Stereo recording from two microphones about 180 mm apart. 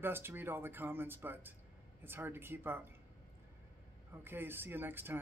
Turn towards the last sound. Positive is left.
turn(degrees=-10)  # may be behind; listen again after turning